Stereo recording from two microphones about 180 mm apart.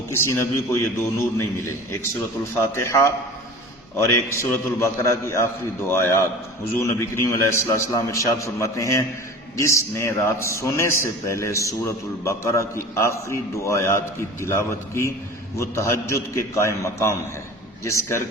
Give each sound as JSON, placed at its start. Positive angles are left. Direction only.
{"t": 0.1, "sound": "a man's voice", "side_deg": 15}
{"t": 2.7, "sound": "a man's voice", "side_deg": 15}